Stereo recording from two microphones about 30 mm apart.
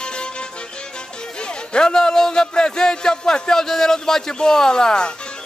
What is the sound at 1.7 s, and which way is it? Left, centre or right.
A man's voice, left.